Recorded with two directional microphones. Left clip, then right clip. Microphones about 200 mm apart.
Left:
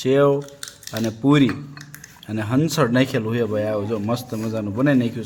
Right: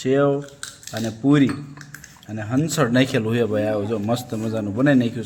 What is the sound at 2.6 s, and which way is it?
A man's voice, 10° left (ahead or behind).